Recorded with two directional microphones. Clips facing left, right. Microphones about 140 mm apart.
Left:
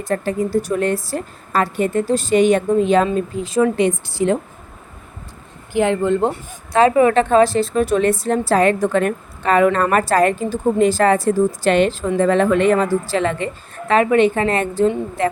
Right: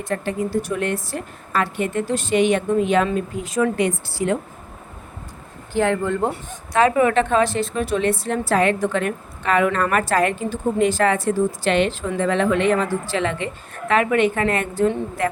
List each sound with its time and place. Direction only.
0.0 s a woman's voice: 40° left (ahead or behind)
5.7 s a woman's voice: 20° left (ahead or behind)